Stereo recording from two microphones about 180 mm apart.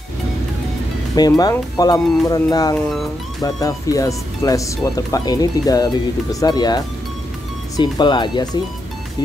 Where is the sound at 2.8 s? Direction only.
Centre (ahead or behind).